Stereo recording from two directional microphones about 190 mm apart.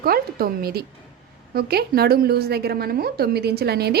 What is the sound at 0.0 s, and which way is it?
A woman's voice, 50° right (ahead or behind).